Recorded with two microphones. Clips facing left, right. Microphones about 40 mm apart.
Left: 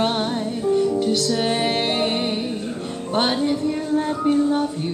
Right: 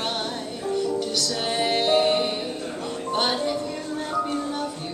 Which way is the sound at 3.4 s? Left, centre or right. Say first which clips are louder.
Left 5 dB; centre.